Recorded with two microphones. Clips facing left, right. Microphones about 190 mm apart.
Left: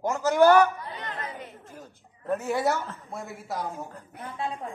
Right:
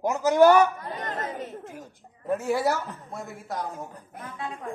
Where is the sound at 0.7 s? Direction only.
45° right (ahead or behind).